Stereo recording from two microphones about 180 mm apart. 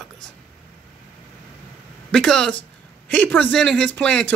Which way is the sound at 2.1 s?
5° left (ahead or behind).